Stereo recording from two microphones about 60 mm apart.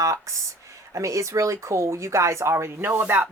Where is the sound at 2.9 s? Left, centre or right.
Right.